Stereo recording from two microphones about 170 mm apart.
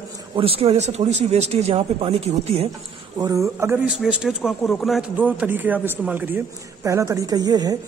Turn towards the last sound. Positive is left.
turn(degrees=-20)  # may be behind; listen again after turning